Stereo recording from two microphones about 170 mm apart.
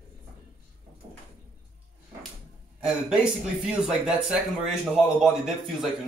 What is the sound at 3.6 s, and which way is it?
Speech, 5° right (ahead or behind).